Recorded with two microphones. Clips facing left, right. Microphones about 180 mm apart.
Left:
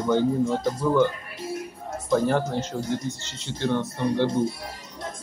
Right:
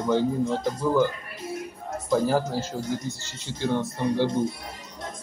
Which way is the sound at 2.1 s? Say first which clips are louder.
Left 1 dB; 5° right (ahead or behind).